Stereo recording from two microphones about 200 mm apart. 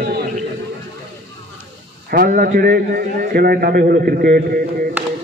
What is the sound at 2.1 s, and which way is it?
A man's voice, 45° right (ahead or behind).